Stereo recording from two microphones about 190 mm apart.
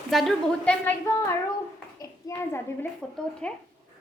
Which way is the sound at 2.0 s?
15° left (ahead or behind).